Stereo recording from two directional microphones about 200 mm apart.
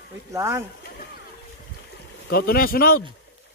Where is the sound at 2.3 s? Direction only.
50° left (ahead or behind).